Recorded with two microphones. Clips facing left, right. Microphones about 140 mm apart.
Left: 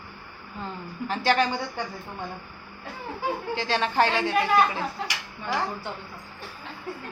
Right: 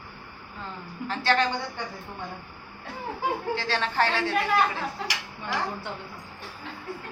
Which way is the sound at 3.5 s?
15° left (ahead or behind).